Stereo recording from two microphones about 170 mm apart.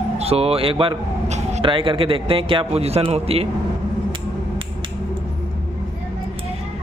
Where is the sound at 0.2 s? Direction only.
35° right (ahead or behind).